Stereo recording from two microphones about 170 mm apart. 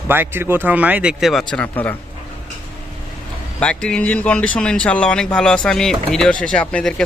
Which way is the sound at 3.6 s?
5° left (ahead or behind).